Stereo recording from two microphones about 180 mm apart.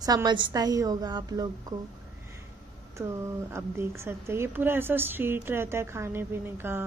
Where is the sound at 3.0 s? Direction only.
15° right (ahead or behind).